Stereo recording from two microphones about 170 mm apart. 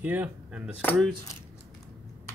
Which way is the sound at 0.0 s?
10° right (ahead or behind).